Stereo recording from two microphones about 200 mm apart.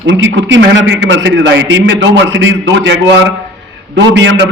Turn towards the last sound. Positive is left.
turn(degrees=-65)  # may be behind; listen again after turning